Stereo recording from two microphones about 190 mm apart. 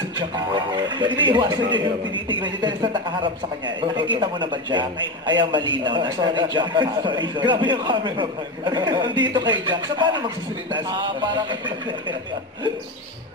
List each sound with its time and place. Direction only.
0.2 s a man's voice: 25° right (ahead or behind)